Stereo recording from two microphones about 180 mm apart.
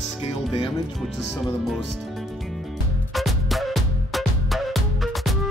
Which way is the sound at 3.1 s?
Centre (ahead or behind).